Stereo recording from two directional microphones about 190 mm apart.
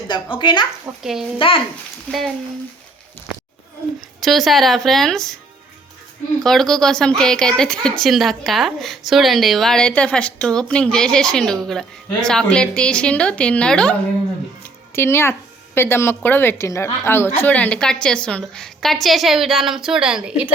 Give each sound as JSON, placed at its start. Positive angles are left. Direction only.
{"t": 0.1, "sound": "speech", "side_deg": 25}
{"t": 2.0, "sound": "a woman's voice", "side_deg": 0}
{"t": 6.4, "sound": "a woman's voice", "side_deg": 0}